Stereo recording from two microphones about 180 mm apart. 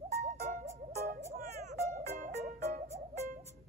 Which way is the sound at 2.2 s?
45° right (ahead or behind).